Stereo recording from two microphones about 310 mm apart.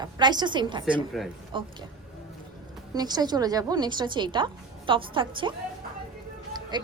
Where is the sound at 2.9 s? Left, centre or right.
Centre.